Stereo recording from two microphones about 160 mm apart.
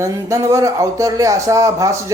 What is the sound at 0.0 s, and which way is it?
Speech, 20° right (ahead or behind).